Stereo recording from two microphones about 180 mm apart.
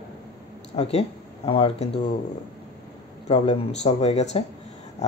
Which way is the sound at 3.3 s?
30° left (ahead or behind).